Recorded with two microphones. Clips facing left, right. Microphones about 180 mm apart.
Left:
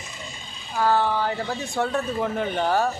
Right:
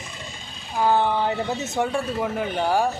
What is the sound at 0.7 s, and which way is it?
Speech, 20° right (ahead or behind).